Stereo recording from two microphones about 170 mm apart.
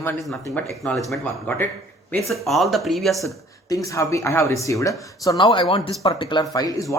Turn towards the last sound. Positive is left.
turn(degrees=20)  # may be behind; listen again after turning